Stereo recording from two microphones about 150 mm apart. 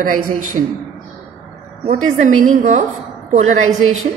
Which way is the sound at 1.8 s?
50° right (ahead or behind).